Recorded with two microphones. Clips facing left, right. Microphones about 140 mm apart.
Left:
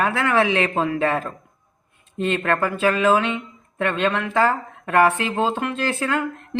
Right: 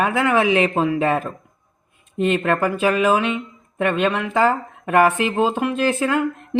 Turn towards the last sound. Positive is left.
turn(degrees=-15)  # may be behind; listen again after turning